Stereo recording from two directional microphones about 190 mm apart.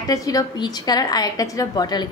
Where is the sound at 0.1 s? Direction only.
20° left (ahead or behind).